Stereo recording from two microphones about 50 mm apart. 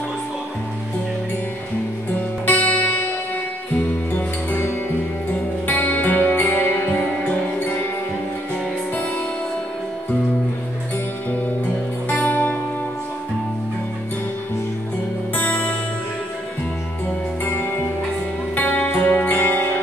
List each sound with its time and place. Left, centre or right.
2.4 s music: left
4.5 s music: left
8.9 s music: left
12.1 s music: left
15.3 s music: left
17.5 s music: left
18.5 s music: left